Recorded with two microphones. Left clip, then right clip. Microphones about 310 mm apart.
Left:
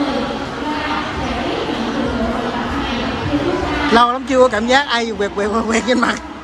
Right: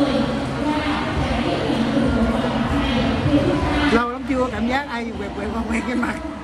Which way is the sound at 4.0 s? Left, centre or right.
Centre.